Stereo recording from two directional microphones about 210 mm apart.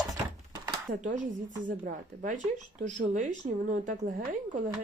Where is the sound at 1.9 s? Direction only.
35° right (ahead or behind).